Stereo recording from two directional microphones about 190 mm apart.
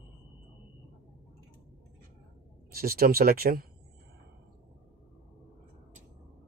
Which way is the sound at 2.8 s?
50° right (ahead or behind).